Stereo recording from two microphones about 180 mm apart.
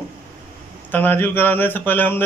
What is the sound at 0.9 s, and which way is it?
Speech, 10° left (ahead or behind).